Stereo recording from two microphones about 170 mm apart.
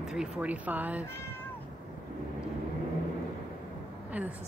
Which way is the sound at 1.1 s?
15° left (ahead or behind).